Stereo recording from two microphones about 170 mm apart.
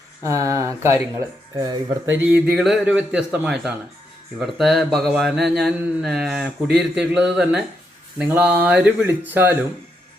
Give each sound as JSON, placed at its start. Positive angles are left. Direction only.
{"t": 0.2, "sound": "speech", "side_deg": -20}
{"t": 2.1, "sound": "a man's voice", "side_deg": -10}